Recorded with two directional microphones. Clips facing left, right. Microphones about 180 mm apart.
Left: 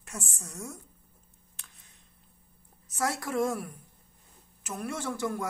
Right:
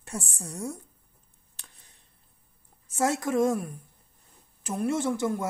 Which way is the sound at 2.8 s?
25° right (ahead or behind).